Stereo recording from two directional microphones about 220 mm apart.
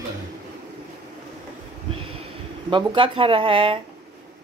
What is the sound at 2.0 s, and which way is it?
Speech, 25° right (ahead or behind).